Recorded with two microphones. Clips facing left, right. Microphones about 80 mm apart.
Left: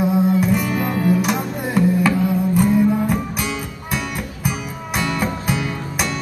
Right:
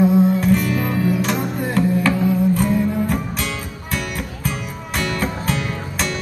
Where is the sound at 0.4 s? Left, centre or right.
Centre.